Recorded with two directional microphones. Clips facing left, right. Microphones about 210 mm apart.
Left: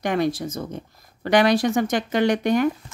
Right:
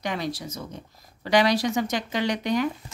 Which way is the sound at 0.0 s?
50° left (ahead or behind).